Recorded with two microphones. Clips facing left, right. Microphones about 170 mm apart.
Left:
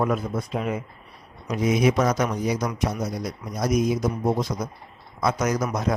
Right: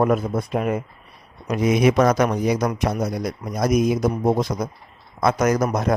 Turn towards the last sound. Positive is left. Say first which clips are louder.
# right 5 dB
turn(degrees=-55)  # may be behind; listen again after turning